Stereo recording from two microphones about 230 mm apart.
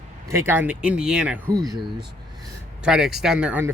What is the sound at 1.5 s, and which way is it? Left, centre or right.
Speech, centre.